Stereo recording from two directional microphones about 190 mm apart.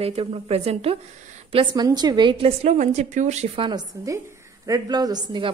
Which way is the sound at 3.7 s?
20° right (ahead or behind).